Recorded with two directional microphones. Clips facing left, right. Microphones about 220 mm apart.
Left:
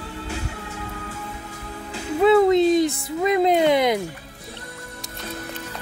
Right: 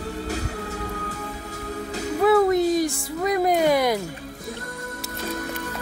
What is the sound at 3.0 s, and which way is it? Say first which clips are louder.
Music: left 3 dB; 25° left (ahead or behind).